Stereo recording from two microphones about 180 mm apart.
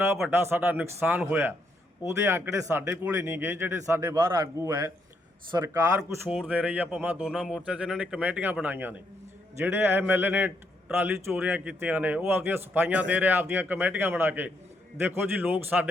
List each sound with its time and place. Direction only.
0.3 s a man's voice: 15° right (ahead or behind)